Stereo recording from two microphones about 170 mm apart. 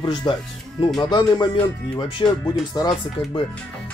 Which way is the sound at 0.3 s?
25° left (ahead or behind).